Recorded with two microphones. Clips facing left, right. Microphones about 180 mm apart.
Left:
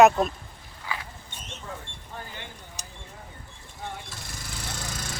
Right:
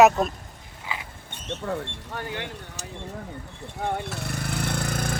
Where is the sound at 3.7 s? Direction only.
65° right (ahead or behind).